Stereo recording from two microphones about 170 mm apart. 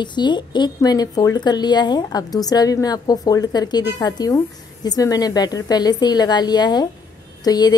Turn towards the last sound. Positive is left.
turn(degrees=25)  # may be behind; listen again after turning